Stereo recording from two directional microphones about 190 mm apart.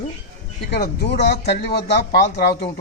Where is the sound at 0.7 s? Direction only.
60° left (ahead or behind).